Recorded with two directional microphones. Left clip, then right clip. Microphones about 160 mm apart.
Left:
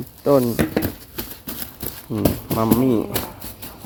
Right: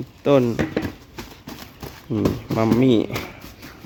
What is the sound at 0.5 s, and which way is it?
Speech, 30° left (ahead or behind).